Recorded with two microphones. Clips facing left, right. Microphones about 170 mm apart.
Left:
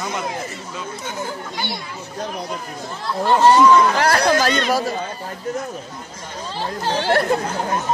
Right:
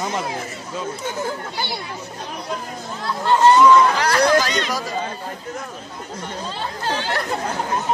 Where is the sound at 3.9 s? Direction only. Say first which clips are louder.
Even; 45° left (ahead or behind).